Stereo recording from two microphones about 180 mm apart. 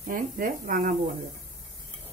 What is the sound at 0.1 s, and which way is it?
Speech, 50° right (ahead or behind).